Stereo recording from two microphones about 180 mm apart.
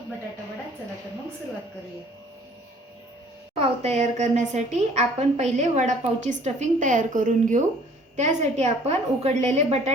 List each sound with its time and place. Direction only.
3.5 s a woman's voice: 35° right (ahead or behind)